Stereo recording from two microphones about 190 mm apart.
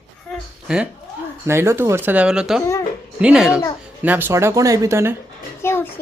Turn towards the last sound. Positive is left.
turn(degrees=15)  # may be behind; listen again after turning